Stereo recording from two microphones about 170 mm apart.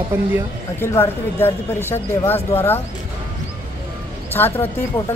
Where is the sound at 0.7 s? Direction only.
15° left (ahead or behind).